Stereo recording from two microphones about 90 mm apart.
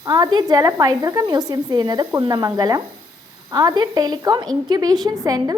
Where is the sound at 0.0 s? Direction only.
45° right (ahead or behind).